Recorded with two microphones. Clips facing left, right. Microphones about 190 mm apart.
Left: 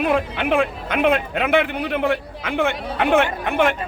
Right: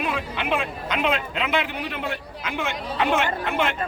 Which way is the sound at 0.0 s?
55° left (ahead or behind).